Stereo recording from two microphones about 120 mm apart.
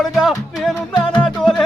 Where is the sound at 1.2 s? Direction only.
5° left (ahead or behind).